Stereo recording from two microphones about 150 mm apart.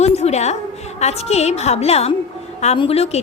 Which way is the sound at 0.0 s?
45° left (ahead or behind).